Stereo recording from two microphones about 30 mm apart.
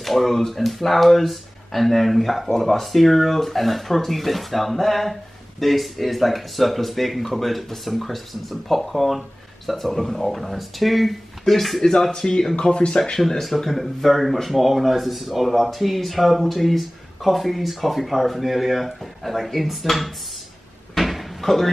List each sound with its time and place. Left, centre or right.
0.0 s speech: centre
12.1 s speech: left
13.3 s speech: centre
20.9 s door: centre